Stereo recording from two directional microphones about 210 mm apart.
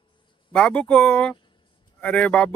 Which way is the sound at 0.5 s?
5° left (ahead or behind).